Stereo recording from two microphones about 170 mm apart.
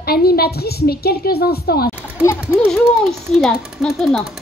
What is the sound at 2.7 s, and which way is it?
Speech, centre (ahead or behind).